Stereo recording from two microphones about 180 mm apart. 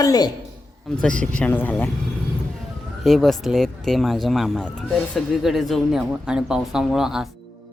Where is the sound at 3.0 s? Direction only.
Centre (ahead or behind).